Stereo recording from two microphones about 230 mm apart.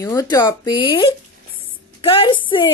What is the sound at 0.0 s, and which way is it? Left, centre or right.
A woman's voice, centre.